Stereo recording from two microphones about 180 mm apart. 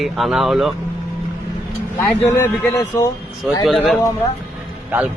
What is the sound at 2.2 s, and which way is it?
Speech, 15° left (ahead or behind).